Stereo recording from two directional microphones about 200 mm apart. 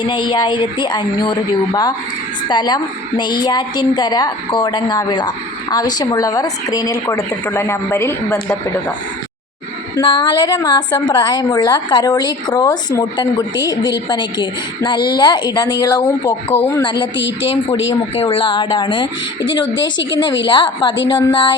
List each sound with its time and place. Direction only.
0.0 s a woman's voice: 20° left (ahead or behind)
9.9 s a woman's voice: 25° left (ahead or behind)
17.2 s speech: 65° left (ahead or behind)
18.1 s a woman's voice: 30° left (ahead or behind)
19.7 s speech: 65° left (ahead or behind)
20.1 s a woman's voice: 20° left (ahead or behind)